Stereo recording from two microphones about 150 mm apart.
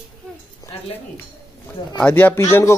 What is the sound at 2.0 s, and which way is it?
Speech, 10° left (ahead or behind).